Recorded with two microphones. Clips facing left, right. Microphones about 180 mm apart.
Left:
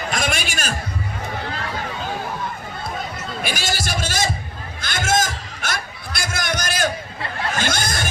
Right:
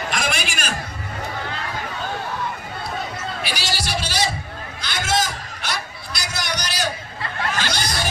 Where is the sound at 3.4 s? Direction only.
50° left (ahead or behind).